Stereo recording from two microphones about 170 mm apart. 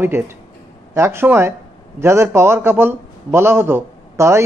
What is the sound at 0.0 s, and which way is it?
A man's voice, 15° right (ahead or behind).